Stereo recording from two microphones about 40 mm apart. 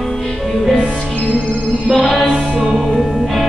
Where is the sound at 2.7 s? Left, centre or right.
Centre.